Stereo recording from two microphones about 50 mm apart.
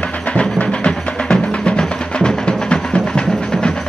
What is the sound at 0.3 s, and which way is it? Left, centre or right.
Music, left.